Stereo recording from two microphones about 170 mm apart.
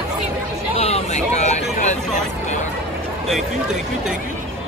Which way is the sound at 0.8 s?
40° left (ahead or behind).